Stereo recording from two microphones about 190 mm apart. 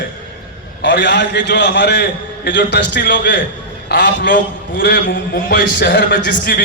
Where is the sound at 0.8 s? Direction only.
65° left (ahead or behind); by 5.6 s 50° left (ahead or behind).